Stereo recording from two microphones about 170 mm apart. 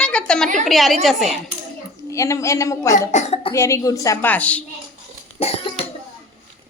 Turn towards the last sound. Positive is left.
turn(degrees=35)  # may be behind; listen again after turning